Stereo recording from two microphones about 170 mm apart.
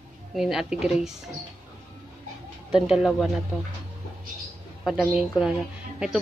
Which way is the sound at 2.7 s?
5° right (ahead or behind).